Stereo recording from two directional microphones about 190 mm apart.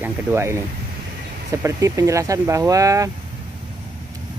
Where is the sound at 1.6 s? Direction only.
15° right (ahead or behind).